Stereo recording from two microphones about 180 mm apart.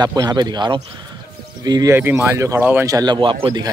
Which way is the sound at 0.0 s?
20° right (ahead or behind).